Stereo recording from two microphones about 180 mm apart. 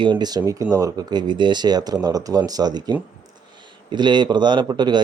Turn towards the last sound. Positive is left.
turn(degrees=-25)  # may be behind; listen again after turning